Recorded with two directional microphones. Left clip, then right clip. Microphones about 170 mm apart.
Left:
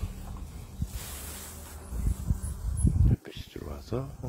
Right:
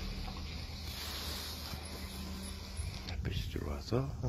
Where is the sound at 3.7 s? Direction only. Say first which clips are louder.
Left 1 dB; 25° left (ahead or behind).